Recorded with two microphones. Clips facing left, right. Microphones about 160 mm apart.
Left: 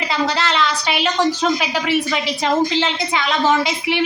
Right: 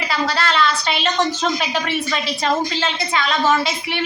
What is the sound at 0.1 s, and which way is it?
A woman's voice, 20° left (ahead or behind).